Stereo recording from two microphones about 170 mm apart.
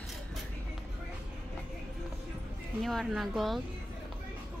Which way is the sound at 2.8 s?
Centre (ahead or behind).